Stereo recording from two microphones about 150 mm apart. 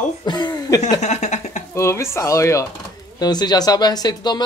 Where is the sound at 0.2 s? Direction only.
30° left (ahead or behind).